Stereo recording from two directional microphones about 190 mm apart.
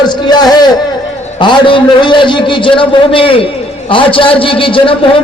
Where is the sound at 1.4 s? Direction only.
25° left (ahead or behind).